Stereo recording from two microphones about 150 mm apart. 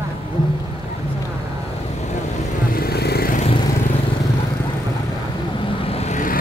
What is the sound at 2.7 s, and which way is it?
Vehicle, 90° left.